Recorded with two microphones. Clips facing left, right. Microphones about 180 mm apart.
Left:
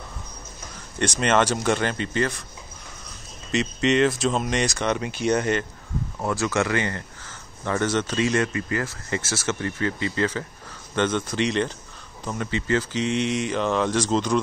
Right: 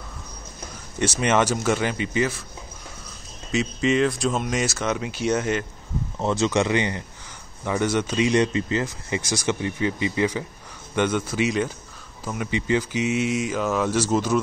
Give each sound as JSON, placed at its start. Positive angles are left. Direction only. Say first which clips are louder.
{"t": 0.9, "sound": "speech", "louder": "even", "side_deg": -10}
{"t": 3.5, "sound": "speech", "louder": "even", "side_deg": 0}
{"t": 6.1, "sound": "speech", "louder": "right 3 dB", "side_deg": -20}